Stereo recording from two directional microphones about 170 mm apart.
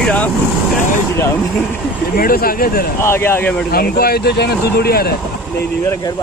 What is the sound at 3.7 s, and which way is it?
Speech, 65° left (ahead or behind).